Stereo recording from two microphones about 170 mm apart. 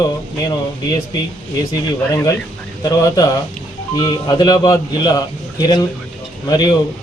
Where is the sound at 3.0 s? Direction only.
20° left (ahead or behind).